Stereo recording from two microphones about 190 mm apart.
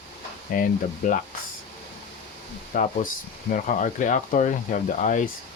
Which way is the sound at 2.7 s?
45° left (ahead or behind).